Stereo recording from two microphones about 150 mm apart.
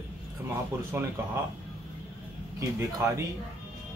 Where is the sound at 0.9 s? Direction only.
15° right (ahead or behind).